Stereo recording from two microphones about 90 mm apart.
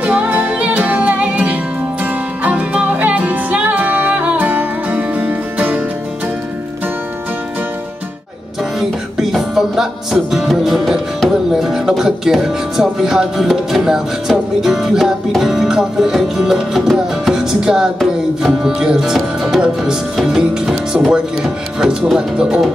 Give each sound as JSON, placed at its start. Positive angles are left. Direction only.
{"t": 0.0, "sound": "music", "side_deg": -15}
{"t": 8.7, "sound": "music", "side_deg": 0}